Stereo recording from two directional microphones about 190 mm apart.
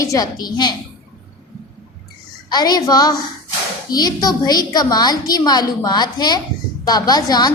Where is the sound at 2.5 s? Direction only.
20° left (ahead or behind).